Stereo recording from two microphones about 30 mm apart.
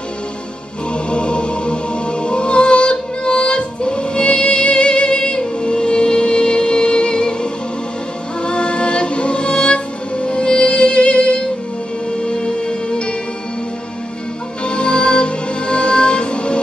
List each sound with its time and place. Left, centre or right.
1.1 s music: left
8.4 s music: left
14.6 s music: left